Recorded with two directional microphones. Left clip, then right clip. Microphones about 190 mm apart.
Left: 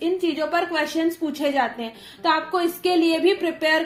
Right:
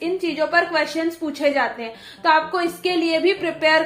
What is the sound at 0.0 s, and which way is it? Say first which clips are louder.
A woman's voice: right 1 dB; 30° left (ahead or behind).